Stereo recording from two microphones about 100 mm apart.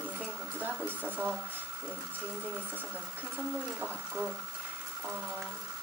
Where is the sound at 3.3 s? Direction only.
15° right (ahead or behind).